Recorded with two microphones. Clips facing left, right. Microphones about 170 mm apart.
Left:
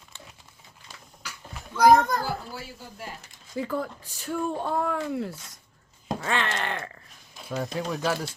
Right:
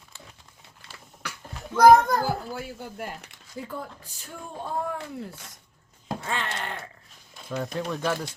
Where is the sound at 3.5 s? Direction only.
90° left.